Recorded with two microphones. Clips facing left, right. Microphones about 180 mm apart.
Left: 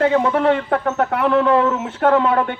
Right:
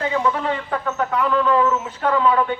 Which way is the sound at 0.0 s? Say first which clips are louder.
Left 6 dB; 55° left (ahead or behind).